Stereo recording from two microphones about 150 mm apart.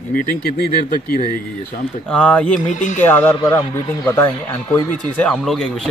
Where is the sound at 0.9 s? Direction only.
30° right (ahead or behind).